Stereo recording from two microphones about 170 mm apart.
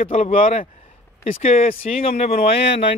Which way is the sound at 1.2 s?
40° left (ahead or behind).